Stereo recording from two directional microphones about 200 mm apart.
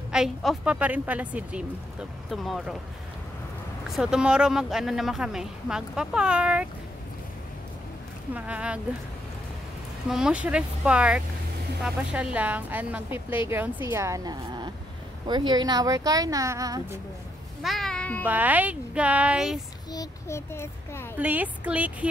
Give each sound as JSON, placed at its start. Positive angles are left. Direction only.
{"t": 0.1, "sound": "speech", "side_deg": 0}
{"t": 3.8, "sound": "speech", "side_deg": 0}
{"t": 8.4, "sound": "a woman's voice", "side_deg": -5}
{"t": 10.0, "sound": "a woman's voice", "side_deg": -5}
{"t": 17.6, "sound": "a sound", "side_deg": 0}
{"t": 18.2, "sound": "a woman's voice", "side_deg": -10}
{"t": 19.9, "sound": "a child's voice", "side_deg": 15}
{"t": 21.2, "sound": "a woman's voice", "side_deg": -5}